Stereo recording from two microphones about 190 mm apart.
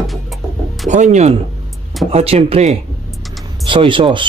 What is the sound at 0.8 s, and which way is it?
Speech, 40° right (ahead or behind).